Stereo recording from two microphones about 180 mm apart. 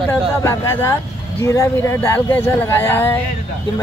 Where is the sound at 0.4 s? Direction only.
15° left (ahead or behind).